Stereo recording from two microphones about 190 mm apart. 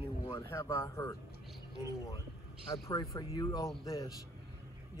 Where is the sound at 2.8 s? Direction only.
15° left (ahead or behind).